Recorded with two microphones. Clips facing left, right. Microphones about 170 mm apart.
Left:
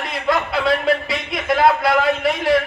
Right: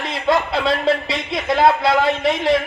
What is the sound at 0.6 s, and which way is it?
A man's voice, 25° right (ahead or behind).